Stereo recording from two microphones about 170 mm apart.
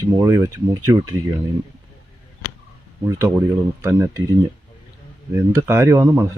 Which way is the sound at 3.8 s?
15° right (ahead or behind).